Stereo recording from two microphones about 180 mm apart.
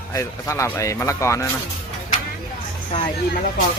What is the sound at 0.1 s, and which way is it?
Speech, 15° left (ahead or behind).